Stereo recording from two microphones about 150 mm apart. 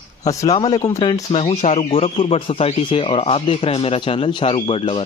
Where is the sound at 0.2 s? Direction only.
25° left (ahead or behind).